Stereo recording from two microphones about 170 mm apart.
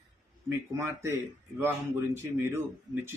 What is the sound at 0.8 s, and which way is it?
Speech, 15° right (ahead or behind).